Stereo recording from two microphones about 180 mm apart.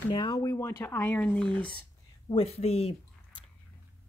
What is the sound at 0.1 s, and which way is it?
Speech, 25° left (ahead or behind).